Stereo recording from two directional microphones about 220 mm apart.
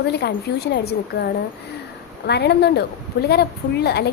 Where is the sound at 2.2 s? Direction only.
50° left (ahead or behind).